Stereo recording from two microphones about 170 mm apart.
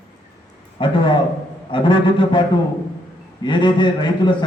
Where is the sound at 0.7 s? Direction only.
30° left (ahead or behind).